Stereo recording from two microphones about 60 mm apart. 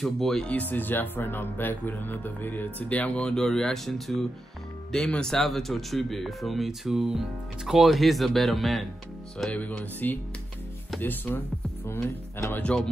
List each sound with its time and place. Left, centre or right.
0.0 s speech: centre
0.5 s speech: left
3.2 s speech: centre
9.5 s music: left
11.0 s speech: left
12.5 s music: left